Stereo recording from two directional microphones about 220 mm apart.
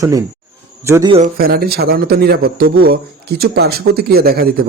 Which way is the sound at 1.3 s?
45° right (ahead or behind).